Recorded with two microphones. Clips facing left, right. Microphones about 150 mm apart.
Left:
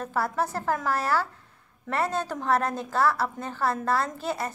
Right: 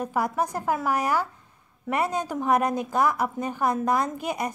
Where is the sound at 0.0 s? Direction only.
15° right (ahead or behind).